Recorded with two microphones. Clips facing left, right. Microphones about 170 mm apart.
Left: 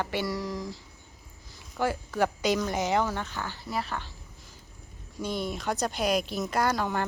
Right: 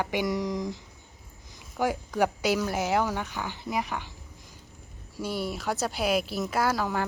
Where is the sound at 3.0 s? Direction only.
15° right (ahead or behind).